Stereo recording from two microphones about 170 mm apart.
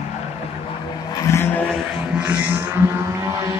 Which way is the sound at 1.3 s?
20° left (ahead or behind).